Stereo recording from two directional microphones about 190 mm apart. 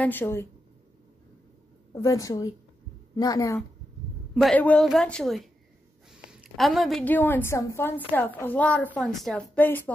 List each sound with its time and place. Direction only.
0.0 s a woman's voice: 10° left (ahead or behind)
2.0 s a woman's voice: 15° left (ahead or behind)
4.3 s a woman's voice: centre (ahead or behind)